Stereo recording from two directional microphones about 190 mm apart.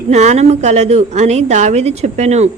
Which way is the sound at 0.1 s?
35° right (ahead or behind).